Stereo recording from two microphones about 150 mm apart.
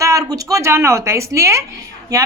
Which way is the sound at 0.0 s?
20° right (ahead or behind).